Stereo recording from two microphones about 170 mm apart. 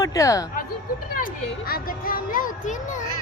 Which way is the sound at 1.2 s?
60° left (ahead or behind).